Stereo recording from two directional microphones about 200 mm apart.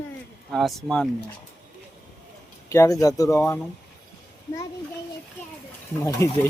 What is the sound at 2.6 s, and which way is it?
Speech, 15° left (ahead or behind).